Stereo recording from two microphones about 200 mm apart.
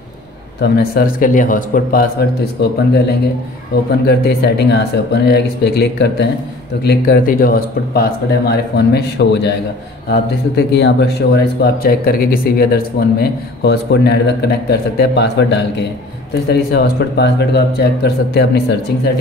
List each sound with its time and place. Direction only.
0.6 s speech: 50° left (ahead or behind)
10.5 s speech: 55° left (ahead or behind)